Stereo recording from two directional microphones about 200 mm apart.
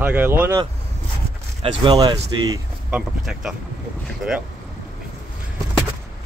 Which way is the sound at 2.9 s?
5° right (ahead or behind).